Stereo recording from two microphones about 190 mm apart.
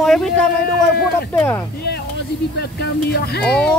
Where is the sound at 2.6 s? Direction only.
55° left (ahead or behind).